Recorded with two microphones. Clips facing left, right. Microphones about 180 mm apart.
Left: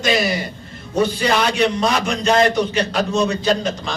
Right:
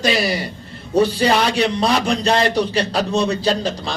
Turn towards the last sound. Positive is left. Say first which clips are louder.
# even
turn(degrees=-35)  # may be behind; listen again after turning